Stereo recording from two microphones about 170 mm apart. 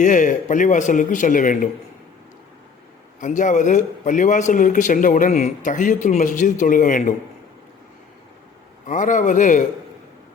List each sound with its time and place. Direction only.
0.0 s a man's voice: 50° left (ahead or behind)
3.2 s a man's voice: 45° left (ahead or behind)
8.9 s a man's voice: 50° left (ahead or behind)